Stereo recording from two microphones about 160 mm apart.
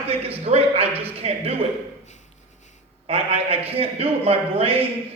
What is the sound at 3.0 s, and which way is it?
A man's voice, 40° right (ahead or behind).